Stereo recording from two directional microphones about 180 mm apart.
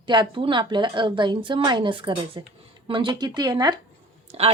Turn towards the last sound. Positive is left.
turn(degrees=-35)  # may be behind; listen again after turning